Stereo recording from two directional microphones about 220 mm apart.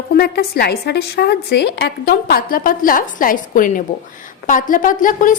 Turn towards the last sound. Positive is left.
turn(degrees=35)  # may be behind; listen again after turning